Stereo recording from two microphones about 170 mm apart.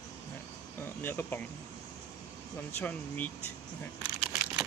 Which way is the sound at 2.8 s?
10° left (ahead or behind).